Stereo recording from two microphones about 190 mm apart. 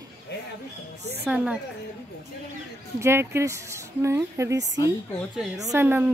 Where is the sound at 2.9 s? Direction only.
15° right (ahead or behind).